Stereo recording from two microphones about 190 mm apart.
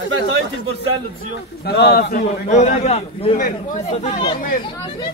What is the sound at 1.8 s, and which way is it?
Speech, 55° left (ahead or behind).